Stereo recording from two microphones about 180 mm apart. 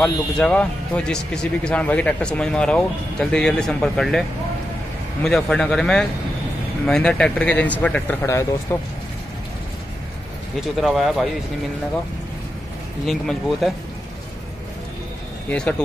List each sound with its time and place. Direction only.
0.0 s a man's voice: 5° left (ahead or behind)
5.2 s a man's voice: 5° left (ahead or behind)
10.8 s a man's voice: centre (ahead or behind)
13.0 s a man's voice: centre (ahead or behind)